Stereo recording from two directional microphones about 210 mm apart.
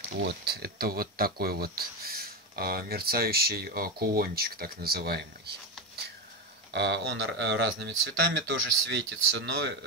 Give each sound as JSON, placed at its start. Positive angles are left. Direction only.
{"t": 0.2, "sound": "speech", "side_deg": -50}
{"t": 6.7, "sound": "speech", "side_deg": -55}